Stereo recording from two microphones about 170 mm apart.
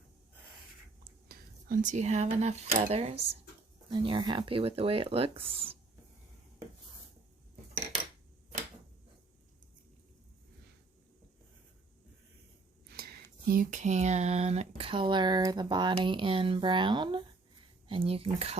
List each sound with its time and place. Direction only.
1.3 s speech: 50° right (ahead or behind); by 5.7 s 35° right (ahead or behind)
12.9 s a sound: 70° right (ahead or behind)
13.5 s speech: 50° right (ahead or behind); by 18.5 s 35° right (ahead or behind)